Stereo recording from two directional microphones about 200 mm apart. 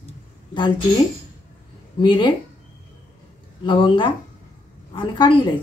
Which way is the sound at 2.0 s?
25° left (ahead or behind).